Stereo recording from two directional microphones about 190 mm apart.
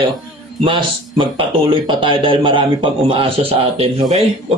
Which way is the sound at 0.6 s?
25° right (ahead or behind).